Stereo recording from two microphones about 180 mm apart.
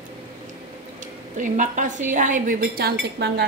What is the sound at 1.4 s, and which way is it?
A woman's voice, 45° right (ahead or behind).